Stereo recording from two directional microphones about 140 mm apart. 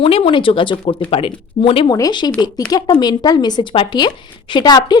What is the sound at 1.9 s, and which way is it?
Speech, 30° left (ahead or behind).